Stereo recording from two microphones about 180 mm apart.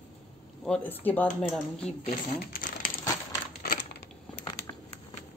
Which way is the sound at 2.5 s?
50° left (ahead or behind).